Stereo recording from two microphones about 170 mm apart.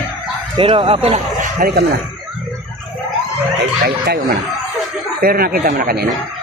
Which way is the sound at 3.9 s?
70° right (ahead or behind).